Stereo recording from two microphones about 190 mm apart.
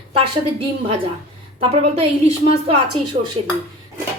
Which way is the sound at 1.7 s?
35° right (ahead or behind).